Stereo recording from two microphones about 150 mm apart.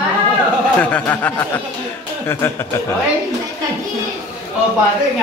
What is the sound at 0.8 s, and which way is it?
Speech, 10° left (ahead or behind).